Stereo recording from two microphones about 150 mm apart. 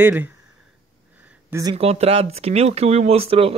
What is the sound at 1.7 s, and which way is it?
Speech, 45° right (ahead or behind).